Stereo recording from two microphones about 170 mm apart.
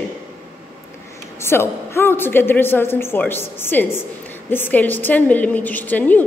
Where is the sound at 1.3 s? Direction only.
15° left (ahead or behind).